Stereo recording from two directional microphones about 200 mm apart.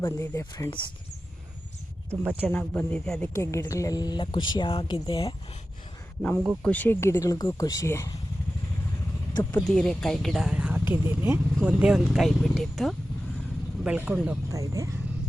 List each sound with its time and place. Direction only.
0.0 s speech: 15° left (ahead or behind)
2.0 s speech: 10° right (ahead or behind)
2.5 s speech: 10° left (ahead or behind); by 5.3 s 25° left (ahead or behind)
6.6 s speech: 5° left (ahead or behind)
9.3 s speech: 10° left (ahead or behind); by 14.9 s 15° right (ahead or behind)